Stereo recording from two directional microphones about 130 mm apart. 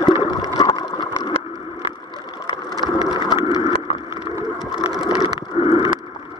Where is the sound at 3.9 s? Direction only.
40° left (ahead or behind).